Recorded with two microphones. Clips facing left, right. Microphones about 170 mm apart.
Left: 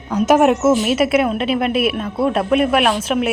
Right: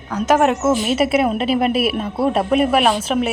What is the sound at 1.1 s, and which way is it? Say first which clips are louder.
Speech: even; 5° right (ahead or behind).